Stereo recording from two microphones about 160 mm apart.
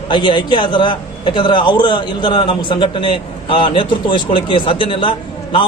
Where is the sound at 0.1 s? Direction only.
30° left (ahead or behind).